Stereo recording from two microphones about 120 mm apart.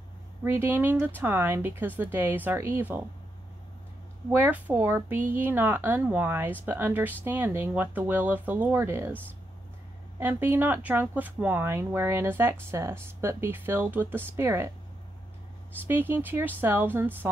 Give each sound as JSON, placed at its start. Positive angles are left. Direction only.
{"t": 0.4, "sound": "speech", "side_deg": -15}
{"t": 4.3, "sound": "speech", "side_deg": -15}
{"t": 15.8, "sound": "speech", "side_deg": -15}